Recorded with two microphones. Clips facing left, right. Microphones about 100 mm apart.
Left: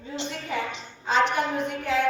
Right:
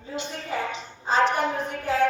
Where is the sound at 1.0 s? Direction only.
35° right (ahead or behind).